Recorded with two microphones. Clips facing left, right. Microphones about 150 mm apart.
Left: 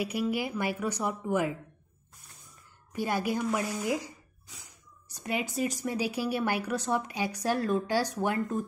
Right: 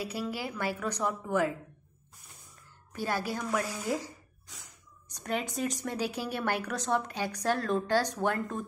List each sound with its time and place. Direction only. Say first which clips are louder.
0.0 s a woman's voice: left 5 dB; 15° left (ahead or behind)
2.9 s a woman's voice: left 3 dB; 15° left (ahead or behind)
4.5 s snort: even; centre (ahead or behind)
5.1 s a woman's voice: left 1 dB; 5° left (ahead or behind)